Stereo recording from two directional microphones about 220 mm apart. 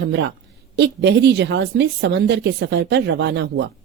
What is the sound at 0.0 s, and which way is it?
Speech, 50° right (ahead or behind).